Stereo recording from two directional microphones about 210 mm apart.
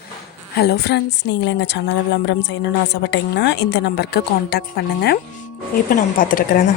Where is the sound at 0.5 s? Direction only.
50° left (ahead or behind).